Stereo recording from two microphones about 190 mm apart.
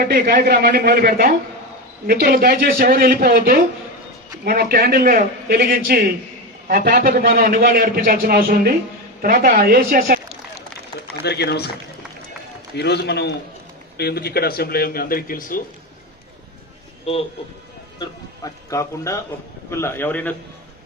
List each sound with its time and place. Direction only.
0.0 s a man's voice: 50° right (ahead or behind)
11.2 s a man's voice: 60° left (ahead or behind)
12.7 s a man's voice: 60° left (ahead or behind)
17.1 s a man's voice: 30° left (ahead or behind)
18.0 s speech: 20° left (ahead or behind)